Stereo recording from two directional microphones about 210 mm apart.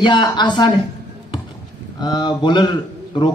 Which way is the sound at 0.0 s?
20° left (ahead or behind).